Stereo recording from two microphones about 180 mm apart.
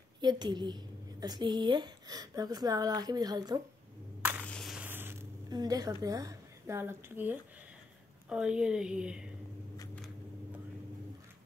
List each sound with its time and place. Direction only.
0.2 s a woman's voice: 25° right (ahead or behind)
4.4 s a sound: 5° left (ahead or behind); by 7.3 s 10° right (ahead or behind)
8.3 s speech: 5° right (ahead or behind)